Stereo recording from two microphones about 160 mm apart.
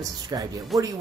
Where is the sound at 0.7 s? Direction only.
Centre (ahead or behind).